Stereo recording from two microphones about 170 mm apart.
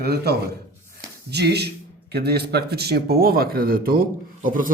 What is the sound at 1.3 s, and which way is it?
Speech, 75° right (ahead or behind).